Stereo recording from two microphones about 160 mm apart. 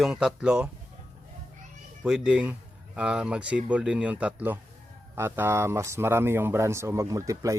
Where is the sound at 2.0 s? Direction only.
5° right (ahead or behind).